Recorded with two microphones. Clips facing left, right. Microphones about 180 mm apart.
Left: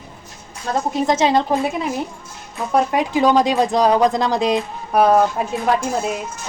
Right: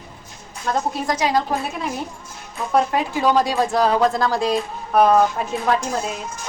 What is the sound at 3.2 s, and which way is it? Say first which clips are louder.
Speech: left 3 dB; 20° left (ahead or behind).